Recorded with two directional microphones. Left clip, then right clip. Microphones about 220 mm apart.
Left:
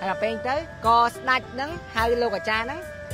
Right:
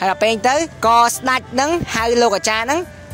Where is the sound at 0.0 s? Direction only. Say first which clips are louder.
Right 10 dB; 50° right (ahead or behind).